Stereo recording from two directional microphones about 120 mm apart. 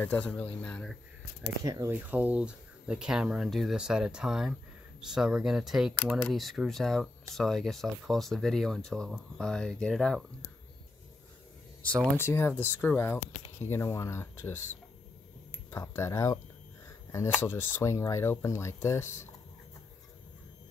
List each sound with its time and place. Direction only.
0.0 s speech: 15° left (ahead or behind)
1.6 s speech: 30° right (ahead or behind)
2.0 s speech: 15° right (ahead or behind); by 10.2 s centre (ahead or behind)
11.8 s speech: 10° left (ahead or behind)
15.7 s speech: 20° left (ahead or behind)
17.4 s speech: 20° left (ahead or behind)